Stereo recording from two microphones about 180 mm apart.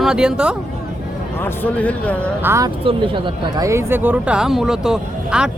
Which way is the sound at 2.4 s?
15° right (ahead or behind).